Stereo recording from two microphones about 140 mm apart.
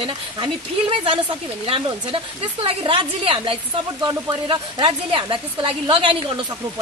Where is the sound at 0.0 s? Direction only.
40° right (ahead or behind).